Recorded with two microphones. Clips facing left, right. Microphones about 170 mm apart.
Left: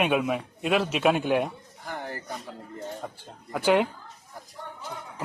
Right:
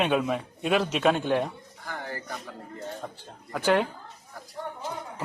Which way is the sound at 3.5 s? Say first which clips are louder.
Left 2 dB; 15° left (ahead or behind).